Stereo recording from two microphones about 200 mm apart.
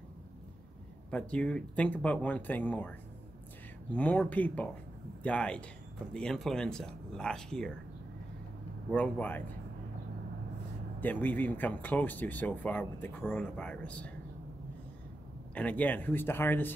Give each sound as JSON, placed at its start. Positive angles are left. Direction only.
{"t": 1.1, "sound": "speech", "side_deg": 5}
{"t": 3.9, "sound": "speech", "side_deg": 10}
{"t": 8.9, "sound": "speech", "side_deg": 5}
{"t": 11.0, "sound": "speech", "side_deg": 10}
{"t": 15.5, "sound": "speech", "side_deg": 5}